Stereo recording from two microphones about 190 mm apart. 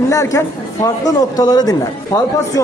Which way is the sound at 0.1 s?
15° left (ahead or behind).